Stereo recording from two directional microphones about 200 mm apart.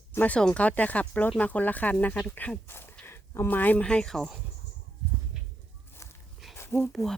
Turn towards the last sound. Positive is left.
turn(degrees=0)  # may be behind; listen again after turning